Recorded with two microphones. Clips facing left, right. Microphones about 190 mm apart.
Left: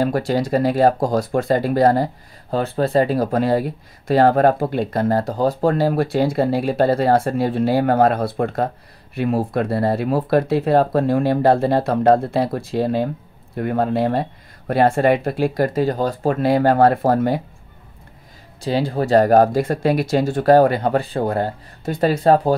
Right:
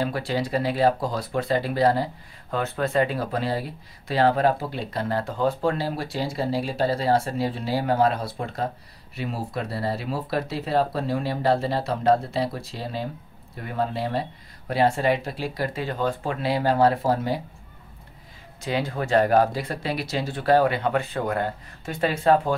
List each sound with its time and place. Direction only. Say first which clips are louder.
0.0 s speech: left 7 dB; 45° left (ahead or behind)
2.5 s speech: left 6 dB; 35° left (ahead or behind); by 17.4 s 55° left (ahead or behind)
18.6 s speech: left 6 dB; 35° left (ahead or behind)